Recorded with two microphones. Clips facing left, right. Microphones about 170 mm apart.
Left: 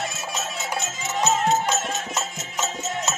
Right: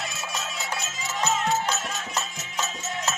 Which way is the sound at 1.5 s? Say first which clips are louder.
Left 4 dB; 20° left (ahead or behind).